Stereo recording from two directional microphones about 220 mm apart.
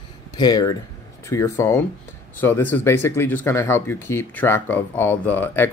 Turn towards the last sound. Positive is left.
turn(degrees=10)  # may be behind; listen again after turning